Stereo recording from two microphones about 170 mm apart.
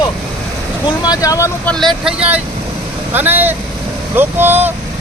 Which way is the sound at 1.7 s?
Centre (ahead or behind).